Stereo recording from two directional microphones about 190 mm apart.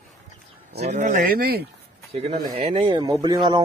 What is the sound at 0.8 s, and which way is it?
Speech, 40° right (ahead or behind).